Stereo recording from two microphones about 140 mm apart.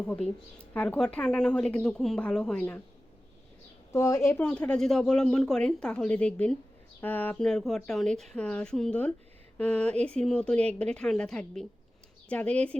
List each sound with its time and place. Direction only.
0.1 s speech: 10° left (ahead or behind)
3.9 s a woman's voice: 25° left (ahead or behind)
4.4 s speech: 5° left (ahead or behind)